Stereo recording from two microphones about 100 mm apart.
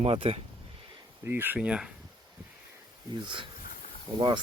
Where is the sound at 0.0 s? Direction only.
75° right (ahead or behind).